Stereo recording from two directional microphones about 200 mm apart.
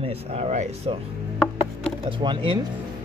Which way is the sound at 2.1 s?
25° right (ahead or behind).